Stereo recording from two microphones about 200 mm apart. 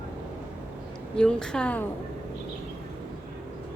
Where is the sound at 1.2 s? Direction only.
5° left (ahead or behind).